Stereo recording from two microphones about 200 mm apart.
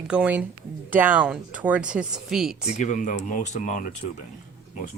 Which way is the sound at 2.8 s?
40° left (ahead or behind).